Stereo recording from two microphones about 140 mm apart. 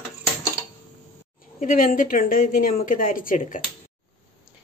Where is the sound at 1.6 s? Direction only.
90° left.